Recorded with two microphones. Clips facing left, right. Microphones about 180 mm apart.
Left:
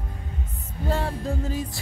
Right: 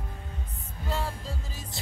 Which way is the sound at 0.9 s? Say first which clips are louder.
Left 7 dB; 60° left (ahead or behind).